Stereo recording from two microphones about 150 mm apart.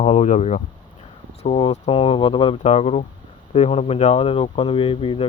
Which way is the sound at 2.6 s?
45° left (ahead or behind).